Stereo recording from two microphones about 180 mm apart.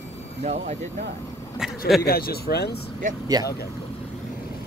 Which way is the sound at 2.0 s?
60° left (ahead or behind).